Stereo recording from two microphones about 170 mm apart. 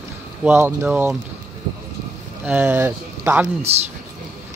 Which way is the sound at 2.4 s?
10° right (ahead or behind).